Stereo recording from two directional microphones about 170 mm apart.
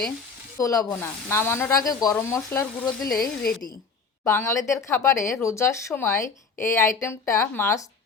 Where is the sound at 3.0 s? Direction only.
60° left (ahead or behind).